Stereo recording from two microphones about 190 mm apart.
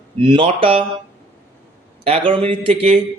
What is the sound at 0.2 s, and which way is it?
Speech, 25° right (ahead or behind).